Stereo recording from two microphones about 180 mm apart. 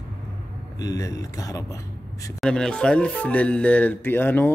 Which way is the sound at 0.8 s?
20° left (ahead or behind).